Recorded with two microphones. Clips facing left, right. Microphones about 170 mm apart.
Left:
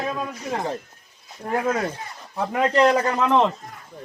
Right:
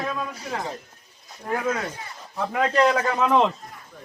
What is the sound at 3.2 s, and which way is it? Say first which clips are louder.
Speech: even; centre (ahead or behind).